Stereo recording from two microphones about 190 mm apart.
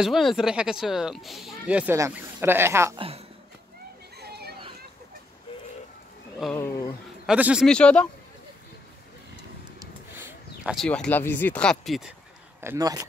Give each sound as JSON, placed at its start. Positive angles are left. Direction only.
{"t": 0.0, "sound": "speech", "side_deg": 0}
{"t": 3.0, "sound": "speech", "side_deg": -30}
{"t": 4.2, "sound": "a sound", "side_deg": -60}
{"t": 6.5, "sound": "speech", "side_deg": 15}
{"t": 7.2, "sound": "speech", "side_deg": -5}
{"t": 7.6, "sound": "speech", "side_deg": 5}
{"t": 9.8, "sound": "a sound", "side_deg": -10}
{"t": 10.9, "sound": "speech", "side_deg": 10}
{"t": 12.5, "sound": "speech", "side_deg": -15}